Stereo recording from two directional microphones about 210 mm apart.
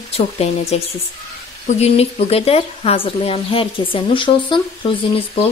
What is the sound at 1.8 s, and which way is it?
Speech, 30° left (ahead or behind).